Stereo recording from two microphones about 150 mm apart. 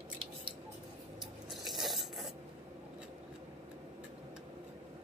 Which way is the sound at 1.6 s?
Centre (ahead or behind).